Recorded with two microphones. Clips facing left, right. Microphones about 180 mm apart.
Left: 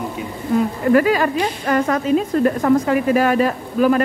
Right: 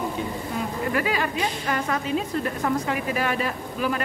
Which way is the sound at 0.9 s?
45° left (ahead or behind).